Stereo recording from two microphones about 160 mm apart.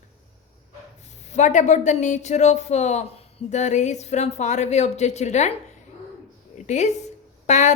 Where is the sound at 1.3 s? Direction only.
50° left (ahead or behind).